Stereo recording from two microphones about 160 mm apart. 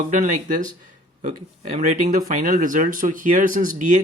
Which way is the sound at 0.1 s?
50° right (ahead or behind).